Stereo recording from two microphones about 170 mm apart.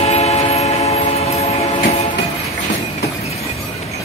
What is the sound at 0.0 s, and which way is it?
Train, 40° left (ahead or behind).